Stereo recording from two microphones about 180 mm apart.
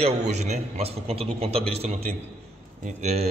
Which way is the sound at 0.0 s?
40° right (ahead or behind).